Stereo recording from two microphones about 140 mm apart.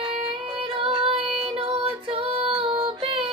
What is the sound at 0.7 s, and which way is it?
Female singing, 40° right (ahead or behind).